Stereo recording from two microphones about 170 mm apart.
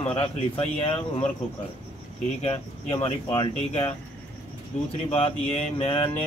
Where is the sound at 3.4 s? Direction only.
35° left (ahead or behind).